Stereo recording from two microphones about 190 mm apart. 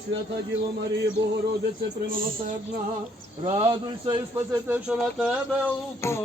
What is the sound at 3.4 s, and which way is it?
Speech, 30° right (ahead or behind).